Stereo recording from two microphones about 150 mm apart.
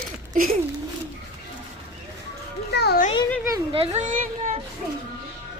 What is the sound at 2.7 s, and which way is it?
Music, 90° left.